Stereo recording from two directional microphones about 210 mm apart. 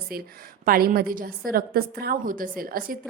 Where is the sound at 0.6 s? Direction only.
45° right (ahead or behind).